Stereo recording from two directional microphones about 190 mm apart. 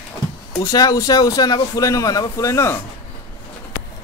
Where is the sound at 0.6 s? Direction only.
20° left (ahead or behind).